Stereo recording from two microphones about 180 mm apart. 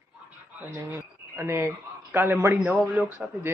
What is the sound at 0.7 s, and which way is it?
A man's voice, 15° right (ahead or behind).